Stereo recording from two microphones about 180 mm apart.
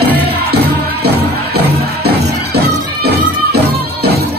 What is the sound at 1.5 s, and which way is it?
Music, 60° right (ahead or behind).